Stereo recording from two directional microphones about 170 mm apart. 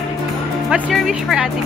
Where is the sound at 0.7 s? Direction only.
Centre (ahead or behind).